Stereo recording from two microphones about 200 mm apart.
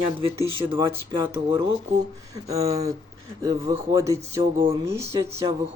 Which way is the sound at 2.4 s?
30° right (ahead or behind).